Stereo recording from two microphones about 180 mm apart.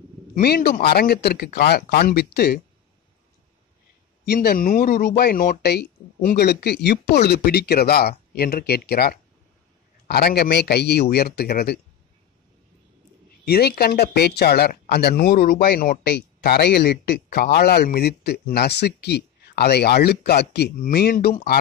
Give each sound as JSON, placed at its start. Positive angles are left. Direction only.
{"t": 0.4, "sound": "speech", "side_deg": 60}
{"t": 4.3, "sound": "speech", "side_deg": 60}
{"t": 13.5, "sound": "speech", "side_deg": 60}